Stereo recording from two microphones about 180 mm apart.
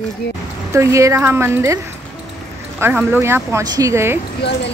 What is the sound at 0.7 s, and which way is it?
Speech, 15° right (ahead or behind).